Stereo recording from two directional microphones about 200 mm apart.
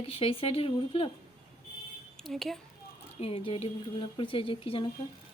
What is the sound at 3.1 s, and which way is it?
Speech, 30° left (ahead or behind).